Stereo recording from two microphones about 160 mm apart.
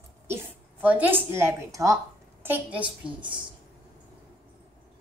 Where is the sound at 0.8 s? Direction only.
10° right (ahead or behind).